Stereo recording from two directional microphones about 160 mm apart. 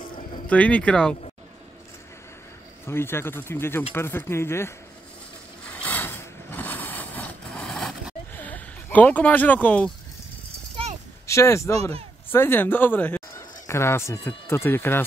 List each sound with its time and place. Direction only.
0.5 s speech: 10° left (ahead or behind)
2.9 s speech: 15° left (ahead or behind)
5.7 s vehicle: 10° left (ahead or behind)
8.4 s speech: 10° left (ahead or behind)
11.2 s speech: 20° left (ahead or behind)